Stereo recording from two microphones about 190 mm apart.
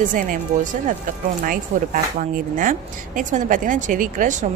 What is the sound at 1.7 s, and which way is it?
A woman's voice, 35° right (ahead or behind).